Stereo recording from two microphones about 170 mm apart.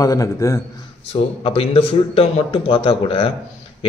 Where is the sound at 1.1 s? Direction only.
35° left (ahead or behind).